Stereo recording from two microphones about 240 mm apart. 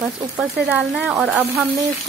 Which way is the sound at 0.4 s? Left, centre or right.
Centre.